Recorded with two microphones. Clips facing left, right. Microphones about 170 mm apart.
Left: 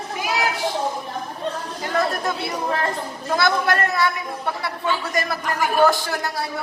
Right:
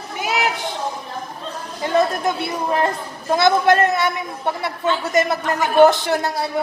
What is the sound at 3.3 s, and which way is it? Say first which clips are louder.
A man's voice: right 5 dB; 20° right (ahead or behind).